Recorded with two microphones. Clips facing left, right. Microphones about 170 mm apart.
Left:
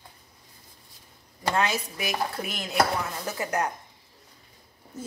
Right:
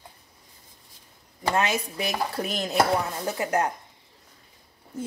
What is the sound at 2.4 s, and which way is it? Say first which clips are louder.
Speech: right 5 dB; 35° right (ahead or behind).